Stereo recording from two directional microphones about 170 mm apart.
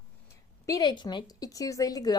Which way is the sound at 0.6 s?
20° left (ahead or behind).